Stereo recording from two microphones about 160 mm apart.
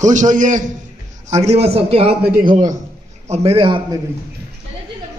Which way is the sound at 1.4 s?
40° right (ahead or behind).